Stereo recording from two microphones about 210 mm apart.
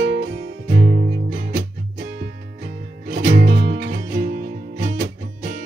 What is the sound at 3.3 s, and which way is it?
Music, 55° right (ahead or behind).